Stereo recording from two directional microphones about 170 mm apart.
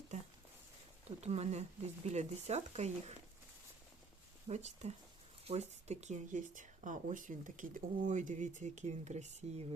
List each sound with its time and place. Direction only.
1.2 s speech: 40° right (ahead or behind)
4.4 s speech: 40° right (ahead or behind)